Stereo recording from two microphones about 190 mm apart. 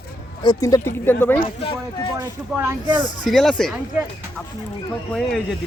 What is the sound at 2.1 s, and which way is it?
Speech, 15° right (ahead or behind).